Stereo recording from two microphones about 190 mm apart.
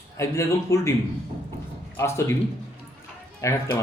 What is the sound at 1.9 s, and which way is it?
Speech, 15° left (ahead or behind).